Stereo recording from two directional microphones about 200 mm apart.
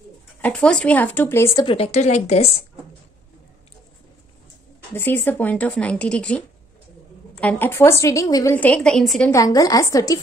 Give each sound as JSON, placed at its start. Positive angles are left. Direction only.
{"t": 0.4, "sound": "a woman's voice", "side_deg": 5}
{"t": 1.7, "sound": "a woman's voice", "side_deg": 30}
{"t": 4.9, "sound": "a woman's voice", "side_deg": 10}
{"t": 9.3, "sound": "a woman's voice", "side_deg": 15}